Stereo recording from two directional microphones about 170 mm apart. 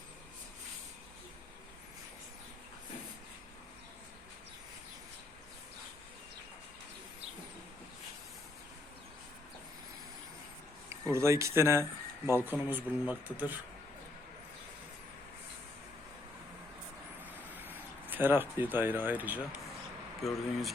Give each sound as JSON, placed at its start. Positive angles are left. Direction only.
{"t": 10.8, "sound": "speech", "side_deg": -15}
{"t": 17.6, "sound": "speech", "side_deg": -10}